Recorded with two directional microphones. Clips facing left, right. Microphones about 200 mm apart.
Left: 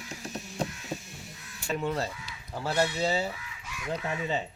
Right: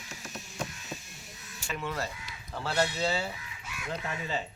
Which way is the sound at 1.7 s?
30° left (ahead or behind).